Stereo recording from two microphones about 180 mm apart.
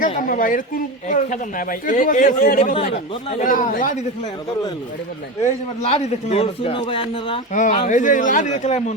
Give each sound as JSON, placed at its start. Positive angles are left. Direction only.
{"t": 0.2, "sound": "a man's voice", "side_deg": 50}
{"t": 2.7, "sound": "a man's voice", "side_deg": 35}
{"t": 3.4, "sound": "a man's voice", "side_deg": 45}
{"t": 5.4, "sound": "a man's voice", "side_deg": 35}
{"t": 7.5, "sound": "a man's voice", "side_deg": 45}